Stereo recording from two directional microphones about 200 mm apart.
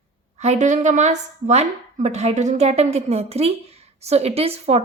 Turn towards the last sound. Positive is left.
turn(degrees=-30)  # may be behind; listen again after turning